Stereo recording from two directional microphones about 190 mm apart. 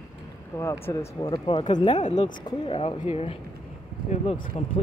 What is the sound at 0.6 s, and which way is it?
Speech, 15° left (ahead or behind).